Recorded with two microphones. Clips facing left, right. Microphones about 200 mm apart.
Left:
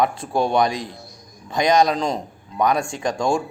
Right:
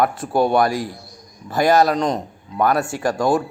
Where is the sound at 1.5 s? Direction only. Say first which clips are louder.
Right 2 dB; 5° right (ahead or behind).